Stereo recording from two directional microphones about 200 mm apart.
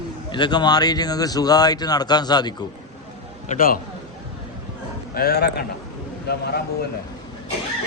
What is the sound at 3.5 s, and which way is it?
Speech, 45° left (ahead or behind).